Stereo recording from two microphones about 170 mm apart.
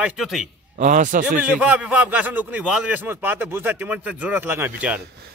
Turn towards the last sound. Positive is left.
turn(degrees=-10)  # may be behind; listen again after turning